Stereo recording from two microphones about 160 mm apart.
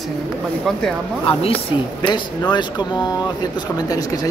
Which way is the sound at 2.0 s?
25° left (ahead or behind).